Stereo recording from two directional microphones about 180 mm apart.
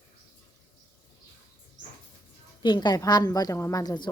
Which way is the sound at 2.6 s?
25° left (ahead or behind).